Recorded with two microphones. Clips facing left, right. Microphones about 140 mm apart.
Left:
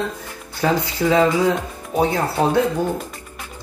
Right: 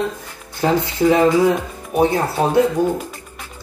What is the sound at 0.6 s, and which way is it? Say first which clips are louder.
Speech: right 3 dB; 20° right (ahead or behind).